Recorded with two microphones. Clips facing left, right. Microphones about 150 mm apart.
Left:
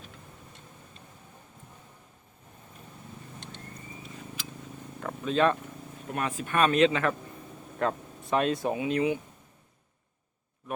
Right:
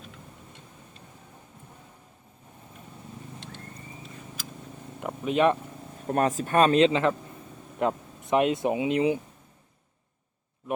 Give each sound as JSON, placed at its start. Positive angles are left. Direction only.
{"t": 4.9, "sound": "cat", "side_deg": -15}
{"t": 6.1, "sound": "speech", "side_deg": -40}